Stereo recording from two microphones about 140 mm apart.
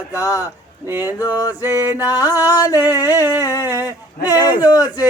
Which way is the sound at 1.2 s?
25° left (ahead or behind).